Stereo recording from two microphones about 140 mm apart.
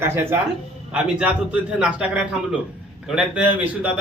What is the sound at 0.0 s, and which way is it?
A man's voice, 15° right (ahead or behind).